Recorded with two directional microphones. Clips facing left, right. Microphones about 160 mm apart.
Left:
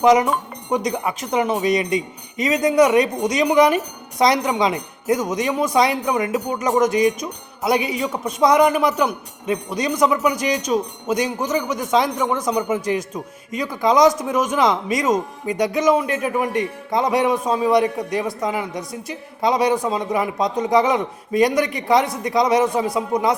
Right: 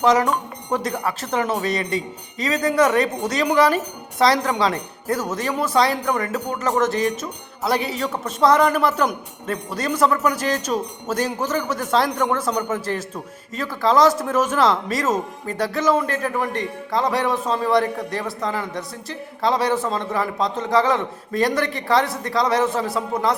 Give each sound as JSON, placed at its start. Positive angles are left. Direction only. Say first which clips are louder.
{"t": 0.0, "sound": "a man's voice", "louder": "left 3 dB", "side_deg": 15}